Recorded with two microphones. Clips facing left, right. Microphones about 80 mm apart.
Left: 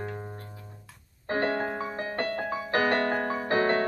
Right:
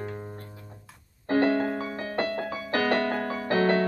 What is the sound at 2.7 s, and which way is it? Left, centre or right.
Music, left.